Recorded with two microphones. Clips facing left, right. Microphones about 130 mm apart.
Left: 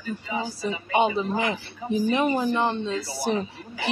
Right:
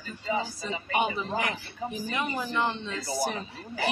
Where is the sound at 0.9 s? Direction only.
25° left (ahead or behind).